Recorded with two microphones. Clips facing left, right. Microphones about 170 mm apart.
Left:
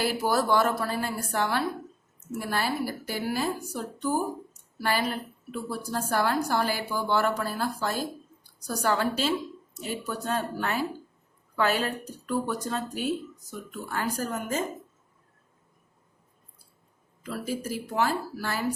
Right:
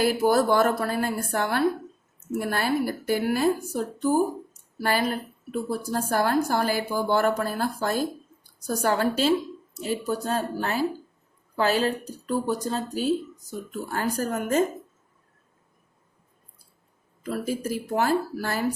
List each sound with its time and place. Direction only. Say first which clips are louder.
0.0 s a woman's voice: right 5 dB; 45° right (ahead or behind)
17.2 s a woman's voice: right 4 dB; 45° right (ahead or behind)